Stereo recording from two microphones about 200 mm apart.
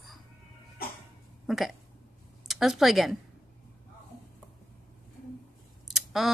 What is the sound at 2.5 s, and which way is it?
Speech, centre (ahead or behind).